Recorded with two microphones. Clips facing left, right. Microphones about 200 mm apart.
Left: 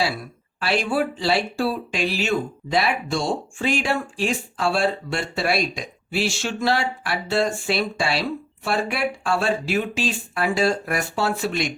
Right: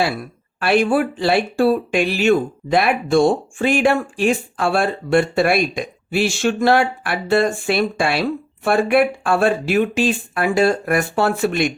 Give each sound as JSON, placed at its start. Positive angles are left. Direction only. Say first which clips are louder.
{"t": 0.6, "sound": "speech", "louder": "right 6 dB", "side_deg": -55}